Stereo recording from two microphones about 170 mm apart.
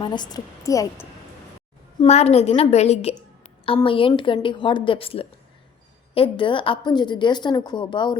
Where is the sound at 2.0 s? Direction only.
40° left (ahead or behind).